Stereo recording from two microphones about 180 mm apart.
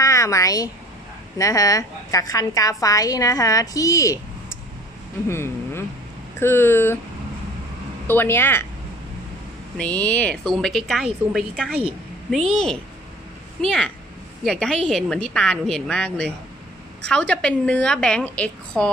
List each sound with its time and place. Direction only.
0.0 s a sound: 15° left (ahead or behind)
1.4 s a woman's voice: 20° left (ahead or behind)
5.3 s a sound: 15° left (ahead or behind)
6.4 s speech: 10° left (ahead or behind)
8.1 s speech: 10° left (ahead or behind)
9.8 s a woman's voice: 10° left (ahead or behind)